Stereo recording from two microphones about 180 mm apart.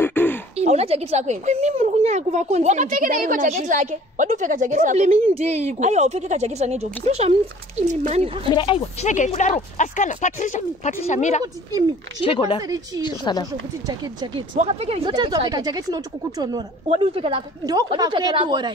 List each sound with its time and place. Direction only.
0.0 s a sound: 10° left (ahead or behind)
0.6 s a woman's voice: 35° right (ahead or behind)
8.5 s speech: 30° left (ahead or behind)
12.3 s speech: 30° left (ahead or behind)
12.6 s a woman's voice: 20° right (ahead or behind)
13.0 s speech: 25° left (ahead or behind)
13.8 s a woman's voice: 25° right (ahead or behind)
14.5 s a woman's voice: 35° right (ahead or behind)